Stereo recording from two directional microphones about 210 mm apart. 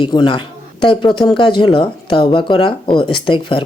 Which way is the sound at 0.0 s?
20° left (ahead or behind).